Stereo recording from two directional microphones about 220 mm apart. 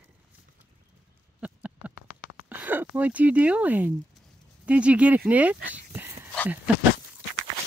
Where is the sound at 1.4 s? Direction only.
5° right (ahead or behind).